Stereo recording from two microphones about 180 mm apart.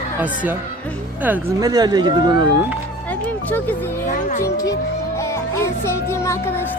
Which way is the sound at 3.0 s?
10° left (ahead or behind).